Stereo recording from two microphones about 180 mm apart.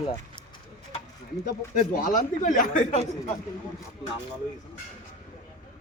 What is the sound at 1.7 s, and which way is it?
Speech, 45° left (ahead or behind).